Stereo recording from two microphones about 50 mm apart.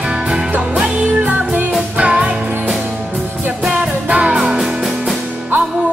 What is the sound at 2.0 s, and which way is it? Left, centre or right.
Music, right.